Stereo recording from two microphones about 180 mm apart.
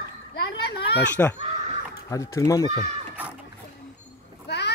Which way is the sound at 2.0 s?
15° left (ahead or behind).